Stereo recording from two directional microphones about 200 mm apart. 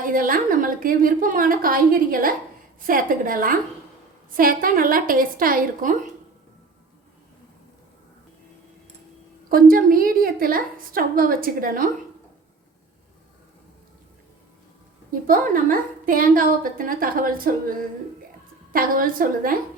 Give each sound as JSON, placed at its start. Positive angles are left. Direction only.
{"t": 0.0, "sound": "a woman's voice", "side_deg": -45}
{"t": 9.5, "sound": "a woman's voice", "side_deg": -45}
{"t": 15.1, "sound": "a woman's voice", "side_deg": -45}